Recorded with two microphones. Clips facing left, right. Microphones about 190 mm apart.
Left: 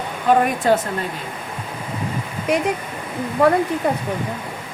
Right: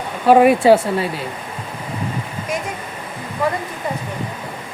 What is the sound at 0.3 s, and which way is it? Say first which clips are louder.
Speech: right 6 dB; 5° right (ahead or behind).